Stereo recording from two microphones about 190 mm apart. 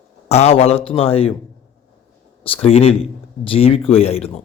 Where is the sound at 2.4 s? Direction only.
30° left (ahead or behind).